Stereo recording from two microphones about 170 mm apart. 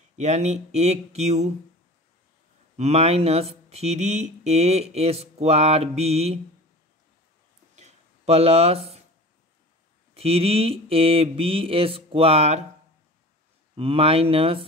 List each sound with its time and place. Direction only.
0.1 s speech: 40° right (ahead or behind)
2.8 s speech: 35° right (ahead or behind)
7.7 s a sound: 40° right (ahead or behind)
10.1 s speech: 35° right (ahead or behind)
13.7 s speech: 35° right (ahead or behind)